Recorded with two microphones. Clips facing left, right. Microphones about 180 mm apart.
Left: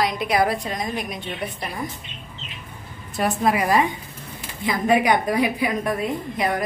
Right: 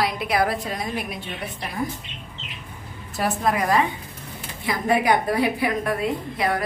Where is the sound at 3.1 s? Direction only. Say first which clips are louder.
Left 2 dB; centre (ahead or behind).